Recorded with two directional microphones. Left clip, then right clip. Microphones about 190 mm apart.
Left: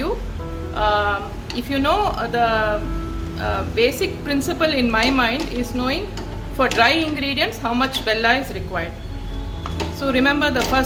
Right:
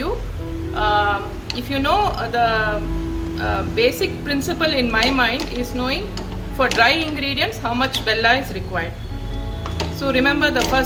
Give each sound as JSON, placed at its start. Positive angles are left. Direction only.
{"t": 0.8, "sound": "music", "side_deg": 40}
{"t": 1.5, "sound": "a woman's voice", "side_deg": 35}
{"t": 10.1, "sound": "a woman's voice", "side_deg": 35}